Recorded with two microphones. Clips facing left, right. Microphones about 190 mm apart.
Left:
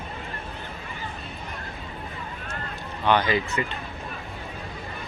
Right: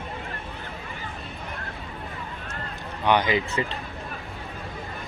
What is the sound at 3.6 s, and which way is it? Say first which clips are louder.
Speech: right 1 dB; 25° right (ahead or behind).